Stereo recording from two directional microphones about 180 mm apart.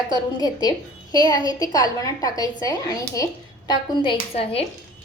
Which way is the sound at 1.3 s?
20° left (ahead or behind).